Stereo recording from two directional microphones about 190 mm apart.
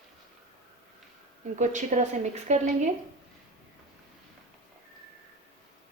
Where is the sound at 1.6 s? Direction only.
40° right (ahead or behind).